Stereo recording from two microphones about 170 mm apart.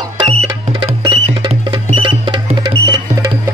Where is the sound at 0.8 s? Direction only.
25° right (ahead or behind).